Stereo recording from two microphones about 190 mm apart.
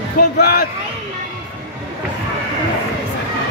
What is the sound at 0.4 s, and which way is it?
Speech, 50° left (ahead or behind).